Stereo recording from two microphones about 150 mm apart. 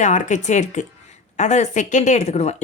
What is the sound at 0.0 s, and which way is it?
Speech, 55° left (ahead or behind).